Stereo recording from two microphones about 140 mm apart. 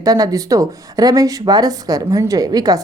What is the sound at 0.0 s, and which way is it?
Speech, 25° right (ahead or behind).